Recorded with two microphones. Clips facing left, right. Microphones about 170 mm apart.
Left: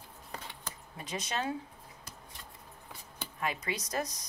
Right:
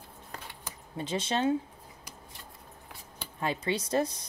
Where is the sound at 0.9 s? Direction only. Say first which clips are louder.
Right 6 dB; 30° right (ahead or behind).